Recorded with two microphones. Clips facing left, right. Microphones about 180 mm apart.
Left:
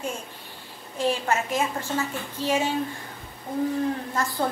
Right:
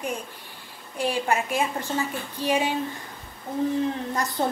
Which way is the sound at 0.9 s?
15° right (ahead or behind).